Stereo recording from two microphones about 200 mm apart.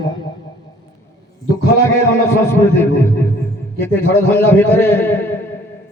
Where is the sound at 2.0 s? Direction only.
15° left (ahead or behind).